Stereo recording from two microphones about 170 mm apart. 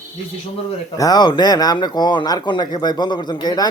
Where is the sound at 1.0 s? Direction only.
25° left (ahead or behind).